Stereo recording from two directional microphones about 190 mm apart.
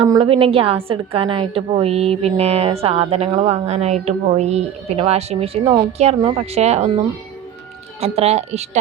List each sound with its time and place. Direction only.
0.1 s a woman's voice: 25° right (ahead or behind)
8.0 s a woman's voice: 35° right (ahead or behind)